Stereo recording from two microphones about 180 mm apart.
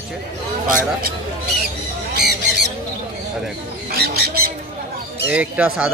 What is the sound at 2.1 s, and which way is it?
Squawk, 70° right (ahead or behind).